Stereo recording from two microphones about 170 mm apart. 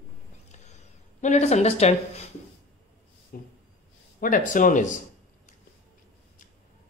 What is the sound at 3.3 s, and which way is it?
Speech, 60° left (ahead or behind).